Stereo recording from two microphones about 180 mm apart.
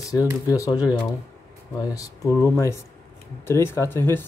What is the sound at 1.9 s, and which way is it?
Speech, 15° left (ahead or behind).